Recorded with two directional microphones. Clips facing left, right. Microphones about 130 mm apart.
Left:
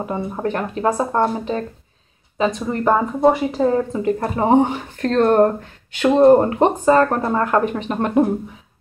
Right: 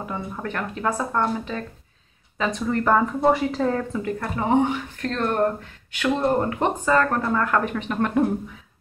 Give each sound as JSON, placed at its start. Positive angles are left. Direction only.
{"t": 0.0, "sound": "speech", "side_deg": 30}
{"t": 2.3, "sound": "speech", "side_deg": 20}